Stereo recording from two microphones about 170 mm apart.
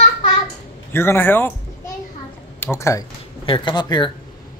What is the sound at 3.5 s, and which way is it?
Speech, 25° left (ahead or behind).